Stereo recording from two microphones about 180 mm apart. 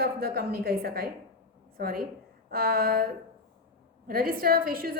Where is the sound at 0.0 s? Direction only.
60° right (ahead or behind).